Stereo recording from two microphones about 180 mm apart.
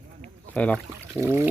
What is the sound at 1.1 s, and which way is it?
Speech, 15° right (ahead or behind).